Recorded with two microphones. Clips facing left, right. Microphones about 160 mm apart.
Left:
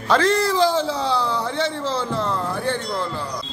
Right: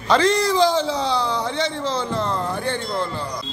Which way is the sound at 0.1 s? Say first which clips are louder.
Right 1 dB; 5° left (ahead or behind).